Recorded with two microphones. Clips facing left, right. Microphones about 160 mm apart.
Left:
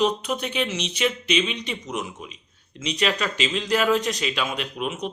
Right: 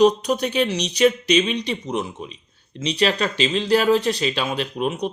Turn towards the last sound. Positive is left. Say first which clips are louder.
# right 5 dB
turn(degrees=-35)  # may be behind; listen again after turning